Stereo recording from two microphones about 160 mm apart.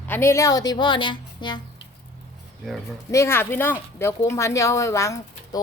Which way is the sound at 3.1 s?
15° left (ahead or behind).